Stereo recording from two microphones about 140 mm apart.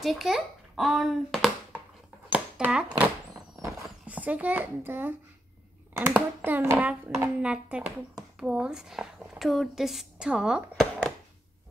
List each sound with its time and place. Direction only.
0.0 s a child's voice: centre (ahead or behind)
2.2 s a sound: 10° right (ahead or behind)
4.0 s a child's voice: 10° right (ahead or behind)